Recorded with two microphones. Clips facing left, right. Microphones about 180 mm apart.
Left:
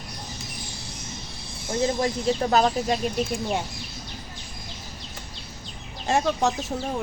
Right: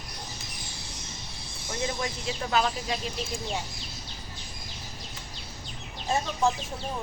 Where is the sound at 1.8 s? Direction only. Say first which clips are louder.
Left 8 dB; 40° left (ahead or behind).